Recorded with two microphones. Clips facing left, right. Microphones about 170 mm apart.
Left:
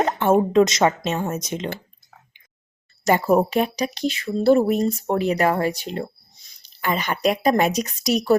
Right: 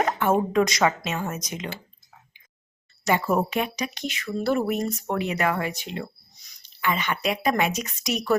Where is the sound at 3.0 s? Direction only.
40° left (ahead or behind).